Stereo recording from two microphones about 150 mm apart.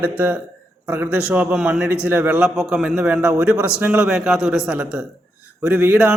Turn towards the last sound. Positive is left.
turn(degrees=-5)  # may be behind; listen again after turning